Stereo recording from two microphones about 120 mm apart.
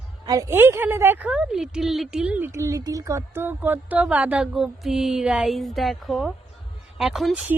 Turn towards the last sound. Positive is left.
turn(degrees=0)  # may be behind; listen again after turning